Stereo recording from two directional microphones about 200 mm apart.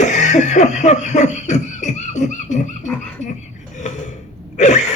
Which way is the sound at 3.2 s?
35° left (ahead or behind).